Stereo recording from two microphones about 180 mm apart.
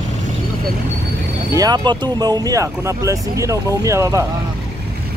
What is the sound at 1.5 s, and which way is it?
Speech, 20° right (ahead or behind).